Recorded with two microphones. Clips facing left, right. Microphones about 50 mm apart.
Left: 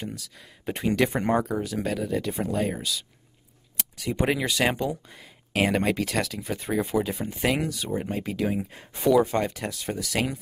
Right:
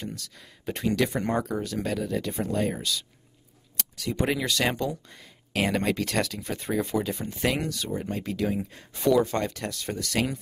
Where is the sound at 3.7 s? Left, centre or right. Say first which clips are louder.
Left 1 dB; centre.